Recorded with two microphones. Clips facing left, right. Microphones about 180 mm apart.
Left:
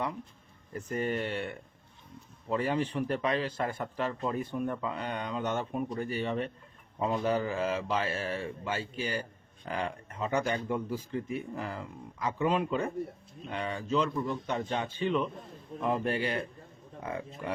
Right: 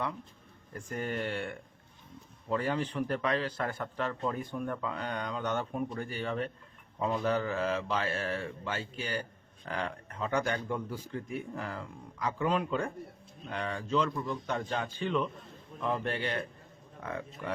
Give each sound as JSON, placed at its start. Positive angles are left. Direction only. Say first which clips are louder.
{"t": 0.7, "sound": "a man's voice", "louder": "left 4 dB", "side_deg": 5}